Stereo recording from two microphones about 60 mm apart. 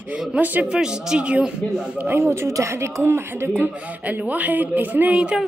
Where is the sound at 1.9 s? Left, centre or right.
Right.